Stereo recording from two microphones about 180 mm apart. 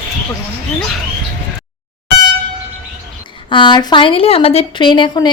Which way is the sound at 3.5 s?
25° left (ahead or behind).